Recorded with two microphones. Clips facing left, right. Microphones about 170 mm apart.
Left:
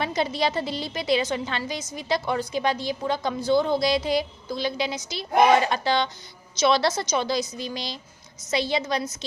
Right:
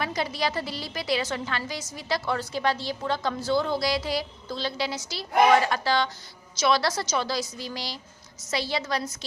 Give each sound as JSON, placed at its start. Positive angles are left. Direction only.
{"t": 0.0, "sound": "a woman's voice", "side_deg": 25}